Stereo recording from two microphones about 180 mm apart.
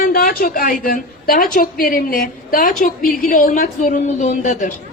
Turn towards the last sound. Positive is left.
turn(degrees=45)  # may be behind; listen again after turning